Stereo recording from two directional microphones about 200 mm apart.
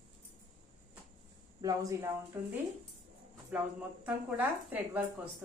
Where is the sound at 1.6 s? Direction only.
15° right (ahead or behind).